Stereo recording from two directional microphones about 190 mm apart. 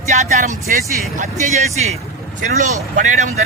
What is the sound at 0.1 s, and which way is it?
Speech, 40° right (ahead or behind).